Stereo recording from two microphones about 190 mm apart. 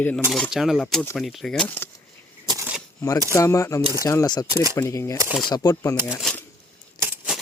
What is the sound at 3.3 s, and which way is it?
Speech, 15° left (ahead or behind).